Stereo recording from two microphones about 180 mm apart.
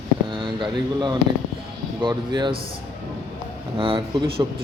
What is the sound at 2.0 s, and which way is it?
Speech, 25° right (ahead or behind).